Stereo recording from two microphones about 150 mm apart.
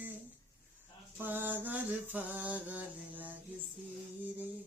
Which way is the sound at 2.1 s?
10° right (ahead or behind).